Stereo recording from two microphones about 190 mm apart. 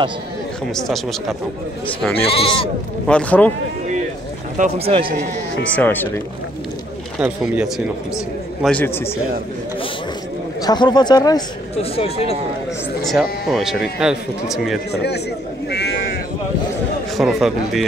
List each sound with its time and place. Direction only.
2.1 s speech: 30° left (ahead or behind)
3.1 s a man's voice: 5° left (ahead or behind)
4.6 s speech: 30° right (ahead or behind)
5.6 s a man's voice: 10° left (ahead or behind)
7.2 s speech: 5° right (ahead or behind)
8.6 s a man's voice: 10° left (ahead or behind)
10.6 s speech: 20° left (ahead or behind)
11.7 s speech: 30° left (ahead or behind)
13.0 s speech: centre (ahead or behind)
14.9 s speech: 60° left (ahead or behind)
17.2 s speech: centre (ahead or behind)